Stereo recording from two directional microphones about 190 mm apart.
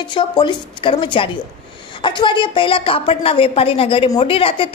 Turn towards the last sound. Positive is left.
turn(degrees=30)  # may be behind; listen again after turning